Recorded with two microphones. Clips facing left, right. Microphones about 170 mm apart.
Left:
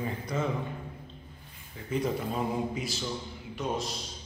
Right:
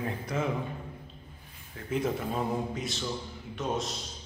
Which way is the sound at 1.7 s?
Centre (ahead or behind).